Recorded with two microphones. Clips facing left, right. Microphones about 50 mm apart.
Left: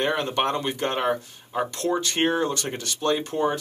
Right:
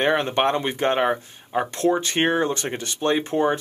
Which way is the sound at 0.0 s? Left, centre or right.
Right.